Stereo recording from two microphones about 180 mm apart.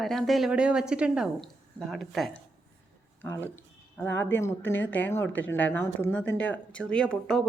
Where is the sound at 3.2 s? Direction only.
10° left (ahead or behind).